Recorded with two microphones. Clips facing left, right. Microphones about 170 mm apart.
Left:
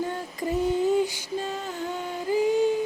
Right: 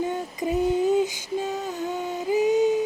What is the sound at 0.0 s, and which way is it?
Female singing, 15° right (ahead or behind).